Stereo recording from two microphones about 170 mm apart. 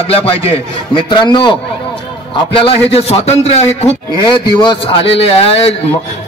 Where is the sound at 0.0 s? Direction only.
35° left (ahead or behind).